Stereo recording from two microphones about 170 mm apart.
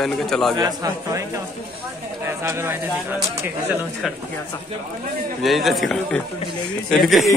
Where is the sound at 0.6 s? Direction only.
25° right (ahead or behind).